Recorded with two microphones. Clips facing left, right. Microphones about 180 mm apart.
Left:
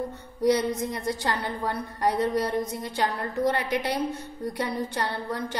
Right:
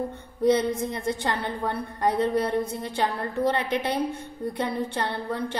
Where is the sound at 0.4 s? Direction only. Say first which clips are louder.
Right 1 dB; 25° right (ahead or behind).